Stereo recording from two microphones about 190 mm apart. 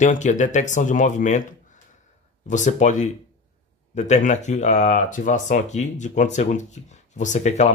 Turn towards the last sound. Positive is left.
turn(degrees=40)  # may be behind; listen again after turning